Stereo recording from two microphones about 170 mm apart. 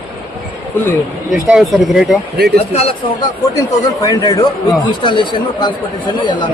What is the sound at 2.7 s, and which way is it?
Speech, 35° left (ahead or behind).